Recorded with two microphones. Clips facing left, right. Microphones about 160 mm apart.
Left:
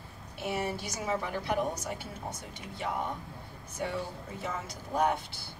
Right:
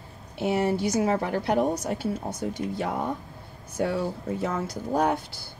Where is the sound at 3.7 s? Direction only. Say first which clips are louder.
Right 8 dB; 75° right (ahead or behind).